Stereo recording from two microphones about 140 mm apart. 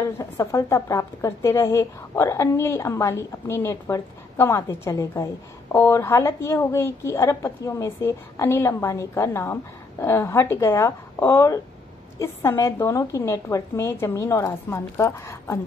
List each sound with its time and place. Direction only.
0.2 s a woman's voice: 20° left (ahead or behind)